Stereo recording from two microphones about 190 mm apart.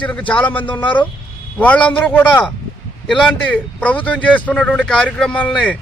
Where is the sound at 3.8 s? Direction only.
10° left (ahead or behind).